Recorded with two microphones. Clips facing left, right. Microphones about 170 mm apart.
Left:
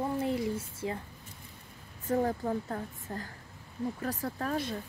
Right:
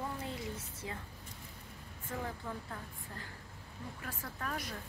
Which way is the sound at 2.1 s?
45° left (ahead or behind).